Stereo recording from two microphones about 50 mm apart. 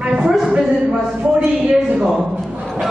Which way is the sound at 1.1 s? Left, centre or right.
Right.